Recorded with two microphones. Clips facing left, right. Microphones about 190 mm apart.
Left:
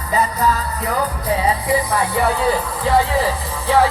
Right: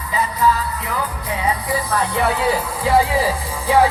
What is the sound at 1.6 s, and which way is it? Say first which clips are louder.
Speech: left 3 dB; 20° left (ahead or behind).